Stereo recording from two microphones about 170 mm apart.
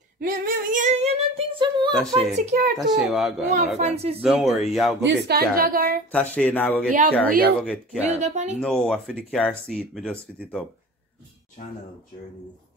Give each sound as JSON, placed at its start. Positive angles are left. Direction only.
{"t": 0.2, "sound": "female singing", "side_deg": -55}
{"t": 1.9, "sound": "speech", "side_deg": 5}
{"t": 2.1, "sound": "a woman's voice", "side_deg": -45}
{"t": 3.1, "sound": "speech", "side_deg": 0}
{"t": 3.4, "sound": "female singing", "side_deg": -45}
{"t": 4.2, "sound": "speech", "side_deg": 0}
{"t": 5.0, "sound": "a woman's voice", "side_deg": -75}
{"t": 6.1, "sound": "speech", "side_deg": 10}
{"t": 6.9, "sound": "speech", "side_deg": -55}
{"t": 7.6, "sound": "speech", "side_deg": 5}
{"t": 8.0, "sound": "a woman's voice", "side_deg": -40}
{"t": 8.5, "sound": "speech", "side_deg": 5}
{"t": 11.6, "sound": "speech", "side_deg": 50}